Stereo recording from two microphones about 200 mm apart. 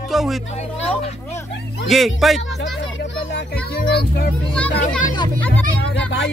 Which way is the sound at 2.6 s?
60° left (ahead or behind).